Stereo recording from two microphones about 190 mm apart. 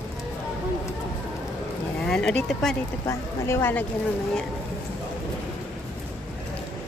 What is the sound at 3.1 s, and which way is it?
Speech, 15° left (ahead or behind).